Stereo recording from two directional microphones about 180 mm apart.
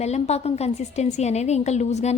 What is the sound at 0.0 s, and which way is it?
A woman's voice, 35° left (ahead or behind).